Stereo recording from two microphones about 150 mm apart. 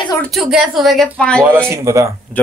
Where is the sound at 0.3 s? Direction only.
Centre (ahead or behind).